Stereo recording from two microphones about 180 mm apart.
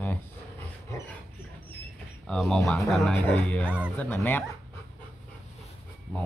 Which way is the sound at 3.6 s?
5° right (ahead or behind).